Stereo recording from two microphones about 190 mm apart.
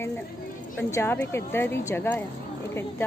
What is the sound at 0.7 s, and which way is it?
Speech, 10° left (ahead or behind).